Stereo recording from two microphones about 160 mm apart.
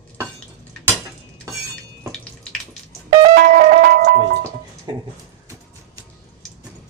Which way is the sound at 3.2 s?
60° right (ahead or behind).